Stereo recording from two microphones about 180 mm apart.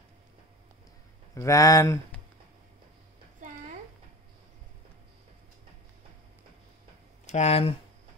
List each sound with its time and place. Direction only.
1.3 s speech: 20° left (ahead or behind)
3.3 s a sound: 45° right (ahead or behind)
7.2 s speech: 40° left (ahead or behind)